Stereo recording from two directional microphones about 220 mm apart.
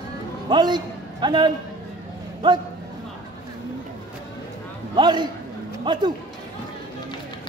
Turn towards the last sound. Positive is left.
turn(degrees=-20)  # may be behind; listen again after turning